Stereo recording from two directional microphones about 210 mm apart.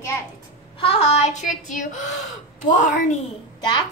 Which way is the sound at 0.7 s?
30° left (ahead or behind).